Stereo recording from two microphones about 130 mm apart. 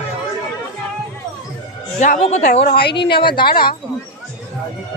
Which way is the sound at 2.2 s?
60° left (ahead or behind).